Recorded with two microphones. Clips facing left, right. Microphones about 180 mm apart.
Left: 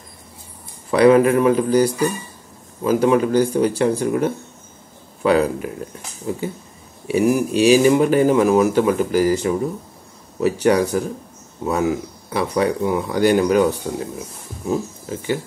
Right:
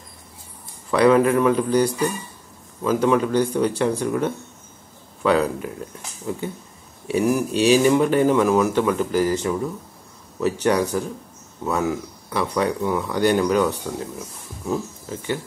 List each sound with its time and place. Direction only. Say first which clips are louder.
0.9 s speech: left 3 dB; 5° left (ahead or behind)
7.1 s speech: left 3 dB; 10° left (ahead or behind)